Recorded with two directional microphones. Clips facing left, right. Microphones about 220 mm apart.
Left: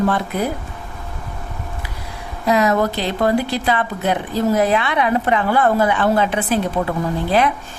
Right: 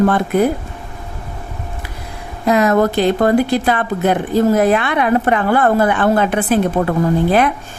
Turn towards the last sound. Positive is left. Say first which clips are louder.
# right 4 dB
turn(degrees=-50)  # may be behind; listen again after turning